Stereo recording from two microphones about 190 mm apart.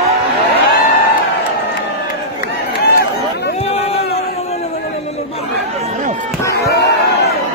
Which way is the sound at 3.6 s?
30° left (ahead or behind).